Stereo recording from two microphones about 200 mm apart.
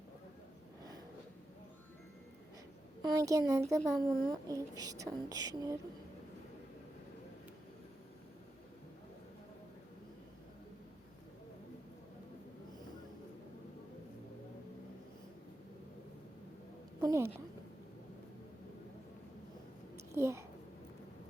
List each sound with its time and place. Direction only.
3.0 s speech: 20° right (ahead or behind)
17.0 s a sound: 15° right (ahead or behind)
20.1 s a child's voice: 15° right (ahead or behind)